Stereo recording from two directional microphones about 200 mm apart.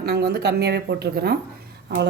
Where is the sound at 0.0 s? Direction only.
55° right (ahead or behind).